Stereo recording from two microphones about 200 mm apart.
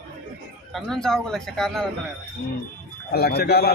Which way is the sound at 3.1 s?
50° left (ahead or behind).